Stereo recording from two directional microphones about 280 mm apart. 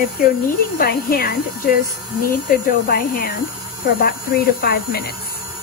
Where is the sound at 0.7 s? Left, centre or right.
Left.